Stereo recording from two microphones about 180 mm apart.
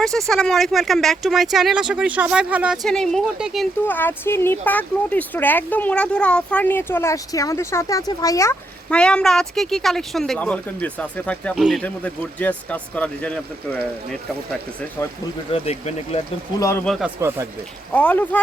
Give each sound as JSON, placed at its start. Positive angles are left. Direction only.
{"t": 0.0, "sound": "speech", "side_deg": 0}
{"t": 3.8, "sound": "speech", "side_deg": 10}
{"t": 8.9, "sound": "speech", "side_deg": 5}
{"t": 15.5, "sound": "speech", "side_deg": 35}
{"t": 16.6, "sound": "speech", "side_deg": 15}
{"t": 16.8, "sound": "speech", "side_deg": 0}
{"t": 17.2, "sound": "speech", "side_deg": -15}
{"t": 17.9, "sound": "speech", "side_deg": 10}